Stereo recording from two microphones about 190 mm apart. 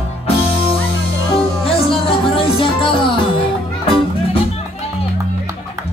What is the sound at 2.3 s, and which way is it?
Music, 30° left (ahead or behind).